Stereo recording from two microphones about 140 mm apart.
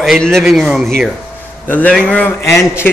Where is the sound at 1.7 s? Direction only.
10° left (ahead or behind).